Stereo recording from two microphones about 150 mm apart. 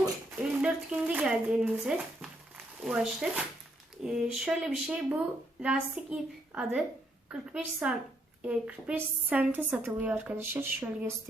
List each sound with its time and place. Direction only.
0.3 s speech: 5° right (ahead or behind)